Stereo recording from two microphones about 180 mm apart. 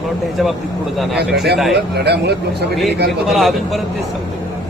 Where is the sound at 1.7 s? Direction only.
65° right (ahead or behind).